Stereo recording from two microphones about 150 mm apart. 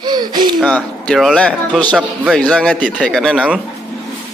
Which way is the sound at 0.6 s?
10° left (ahead or behind).